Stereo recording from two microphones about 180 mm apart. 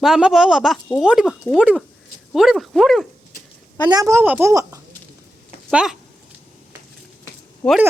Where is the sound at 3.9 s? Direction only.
20° right (ahead or behind).